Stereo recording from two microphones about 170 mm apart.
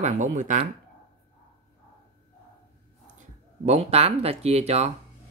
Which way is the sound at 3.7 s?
40° right (ahead or behind).